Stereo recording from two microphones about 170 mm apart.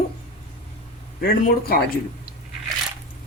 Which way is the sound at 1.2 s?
60° left (ahead or behind).